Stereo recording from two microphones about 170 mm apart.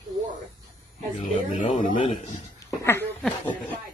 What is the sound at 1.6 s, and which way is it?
Speech, 50° left (ahead or behind).